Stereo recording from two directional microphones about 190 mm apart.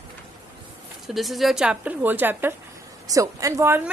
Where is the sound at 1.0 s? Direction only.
Centre (ahead or behind).